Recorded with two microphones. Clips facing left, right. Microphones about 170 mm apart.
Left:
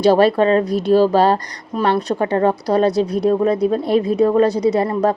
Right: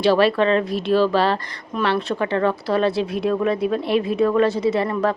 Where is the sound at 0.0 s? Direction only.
40° left (ahead or behind).